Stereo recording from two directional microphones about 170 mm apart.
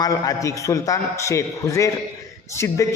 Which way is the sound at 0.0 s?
20° left (ahead or behind).